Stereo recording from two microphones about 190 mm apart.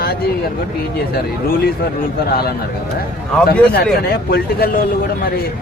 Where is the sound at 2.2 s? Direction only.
55° left (ahead or behind).